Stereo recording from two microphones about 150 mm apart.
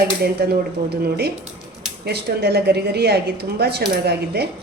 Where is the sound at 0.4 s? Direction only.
90° right.